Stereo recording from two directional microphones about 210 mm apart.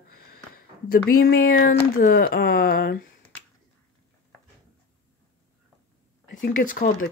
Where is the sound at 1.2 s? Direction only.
45° left (ahead or behind).